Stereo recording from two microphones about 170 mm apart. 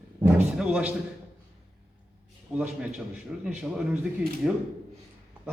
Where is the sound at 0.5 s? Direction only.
5° right (ahead or behind).